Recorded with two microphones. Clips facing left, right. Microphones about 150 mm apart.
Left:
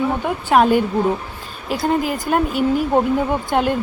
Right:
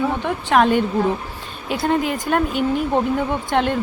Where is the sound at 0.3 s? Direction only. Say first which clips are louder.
Left 2 dB; 5° left (ahead or behind).